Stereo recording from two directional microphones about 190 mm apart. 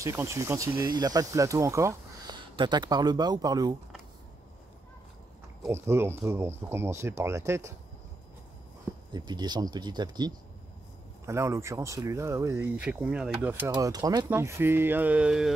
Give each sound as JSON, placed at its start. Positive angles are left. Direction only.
{"t": 0.0, "sound": "speech", "side_deg": -15}
{"t": 5.6, "sound": "speech", "side_deg": -15}
{"t": 9.1, "sound": "speech", "side_deg": -20}
{"t": 13.7, "sound": "speech", "side_deg": -20}